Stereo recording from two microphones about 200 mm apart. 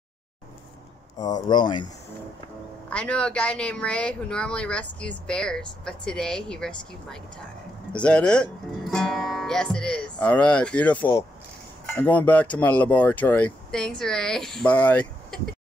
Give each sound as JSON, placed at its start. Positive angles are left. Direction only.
{"t": 1.2, "sound": "speech", "side_deg": 20}
{"t": 2.9, "sound": "speech", "side_deg": 5}
{"t": 7.9, "sound": "speech", "side_deg": 5}